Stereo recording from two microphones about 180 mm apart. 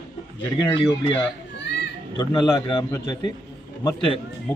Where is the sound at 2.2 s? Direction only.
20° left (ahead or behind).